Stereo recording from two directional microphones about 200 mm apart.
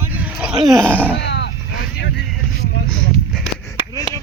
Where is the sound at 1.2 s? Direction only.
60° left (ahead or behind).